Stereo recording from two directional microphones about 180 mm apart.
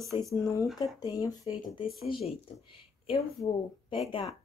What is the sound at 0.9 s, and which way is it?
Speech, 20° left (ahead or behind).